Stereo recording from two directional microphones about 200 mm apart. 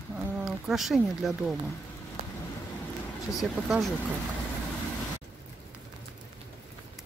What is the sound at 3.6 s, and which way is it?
Speech, centre (ahead or behind).